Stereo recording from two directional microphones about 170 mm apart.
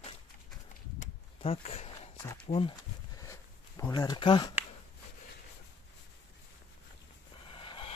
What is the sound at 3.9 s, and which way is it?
Speech, 25° left (ahead or behind).